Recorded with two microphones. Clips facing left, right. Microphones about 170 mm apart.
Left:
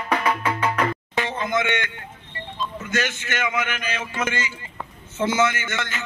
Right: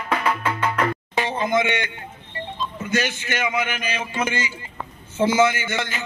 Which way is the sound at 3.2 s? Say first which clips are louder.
Right 2 dB; 15° right (ahead or behind).